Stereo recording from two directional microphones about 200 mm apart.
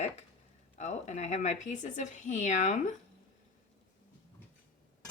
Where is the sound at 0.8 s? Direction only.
35° left (ahead or behind).